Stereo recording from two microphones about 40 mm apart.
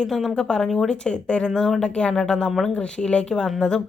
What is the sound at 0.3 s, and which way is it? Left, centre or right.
Speech, left.